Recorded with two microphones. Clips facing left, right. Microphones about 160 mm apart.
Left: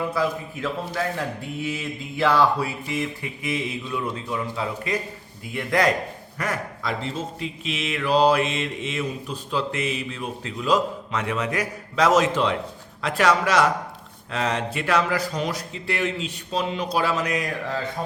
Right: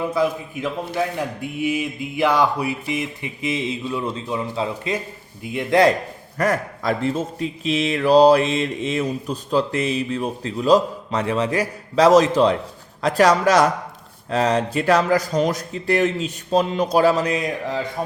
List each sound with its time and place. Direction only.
0.0 s speech: 20° right (ahead or behind)
6.3 s speech: 45° right (ahead or behind); by 17.7 s 25° right (ahead or behind)